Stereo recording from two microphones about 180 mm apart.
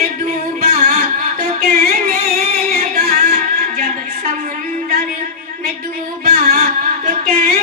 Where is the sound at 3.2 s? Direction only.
40° right (ahead or behind).